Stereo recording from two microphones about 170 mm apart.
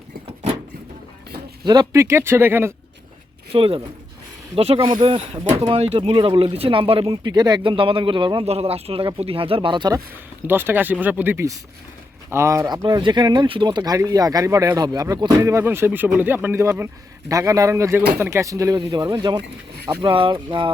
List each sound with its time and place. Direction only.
1.6 s speech: 25° right (ahead or behind)
3.5 s speech: 35° right (ahead or behind)
10.4 s speech: 15° right (ahead or behind); by 20.7 s 30° right (ahead or behind)